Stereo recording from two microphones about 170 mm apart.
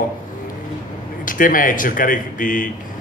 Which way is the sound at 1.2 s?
55° left (ahead or behind).